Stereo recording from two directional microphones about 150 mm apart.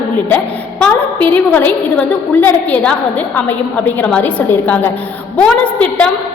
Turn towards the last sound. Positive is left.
turn(degrees=10)  # may be behind; listen again after turning